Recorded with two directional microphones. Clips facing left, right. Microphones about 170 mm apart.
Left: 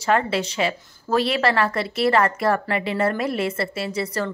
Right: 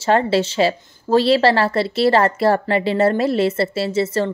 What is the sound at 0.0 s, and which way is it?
Speech, 30° right (ahead or behind).